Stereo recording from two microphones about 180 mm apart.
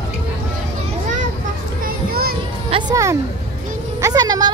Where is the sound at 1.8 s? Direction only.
55° right (ahead or behind).